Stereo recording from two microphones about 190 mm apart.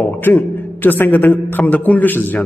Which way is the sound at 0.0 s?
10° left (ahead or behind).